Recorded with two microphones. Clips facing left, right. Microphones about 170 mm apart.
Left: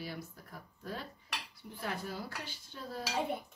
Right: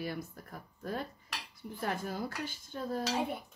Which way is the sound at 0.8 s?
50° right (ahead or behind).